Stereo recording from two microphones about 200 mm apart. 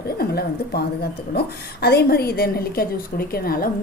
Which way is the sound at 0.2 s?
50° left (ahead or behind).